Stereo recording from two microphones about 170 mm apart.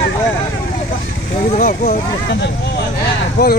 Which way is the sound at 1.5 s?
45° left (ahead or behind).